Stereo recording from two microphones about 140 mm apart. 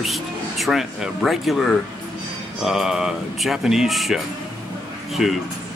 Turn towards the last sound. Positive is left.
turn(degrees=0)  # may be behind; listen again after turning